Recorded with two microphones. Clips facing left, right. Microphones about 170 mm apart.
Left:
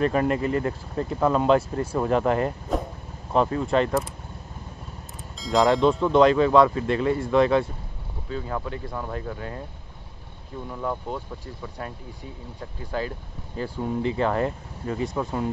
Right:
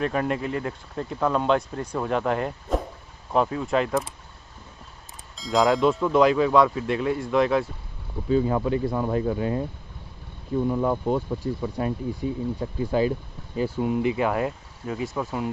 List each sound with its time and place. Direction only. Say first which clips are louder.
0.0 s speech: left 3 dB; centre (ahead or behind)
5.4 s speech: left 1 dB; centre (ahead or behind)
8.3 s speech: right 9 dB; 15° right (ahead or behind)
10.7 s speech: right 4 dB; 20° right (ahead or behind); by 15.5 s 5° right (ahead or behind)